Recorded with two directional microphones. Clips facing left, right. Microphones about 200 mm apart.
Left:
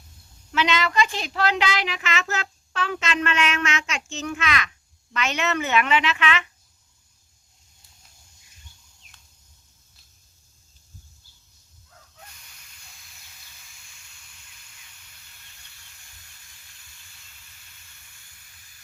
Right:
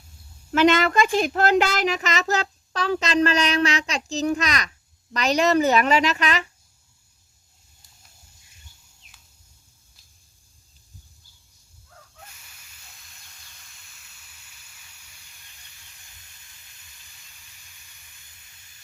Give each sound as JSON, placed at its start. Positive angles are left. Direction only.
{"t": 0.5, "sound": "speech", "side_deg": -50}